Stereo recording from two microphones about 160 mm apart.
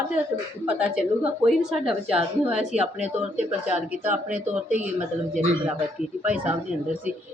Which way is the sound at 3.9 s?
10° right (ahead or behind).